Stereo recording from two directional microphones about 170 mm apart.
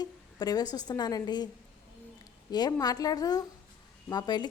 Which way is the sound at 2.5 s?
25° left (ahead or behind).